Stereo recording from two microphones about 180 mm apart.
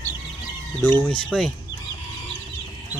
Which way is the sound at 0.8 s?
15° left (ahead or behind).